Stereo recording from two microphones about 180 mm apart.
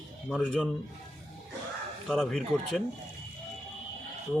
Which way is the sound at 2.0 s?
Centre (ahead or behind).